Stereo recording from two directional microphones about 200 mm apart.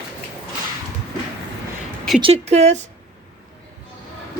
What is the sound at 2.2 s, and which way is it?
Speech, 30° right (ahead or behind).